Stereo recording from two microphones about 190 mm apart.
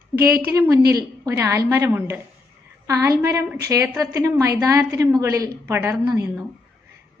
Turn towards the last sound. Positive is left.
turn(degrees=-15)  # may be behind; listen again after turning